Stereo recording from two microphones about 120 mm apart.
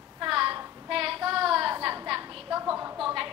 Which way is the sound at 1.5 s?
25° right (ahead or behind).